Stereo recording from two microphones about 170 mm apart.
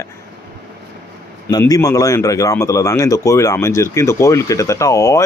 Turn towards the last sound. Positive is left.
turn(degrees=20)  # may be behind; listen again after turning